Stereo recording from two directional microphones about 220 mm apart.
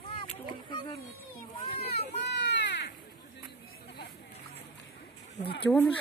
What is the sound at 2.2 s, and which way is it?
Baby cry, 50° left (ahead or behind).